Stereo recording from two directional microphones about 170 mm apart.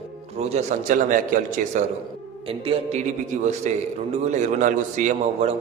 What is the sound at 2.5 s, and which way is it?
A man's voice, 35° right (ahead or behind).